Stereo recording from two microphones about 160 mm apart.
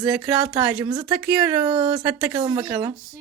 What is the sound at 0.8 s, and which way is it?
Speech, 25° right (ahead or behind).